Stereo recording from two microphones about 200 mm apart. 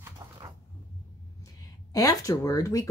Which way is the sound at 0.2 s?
20° right (ahead or behind).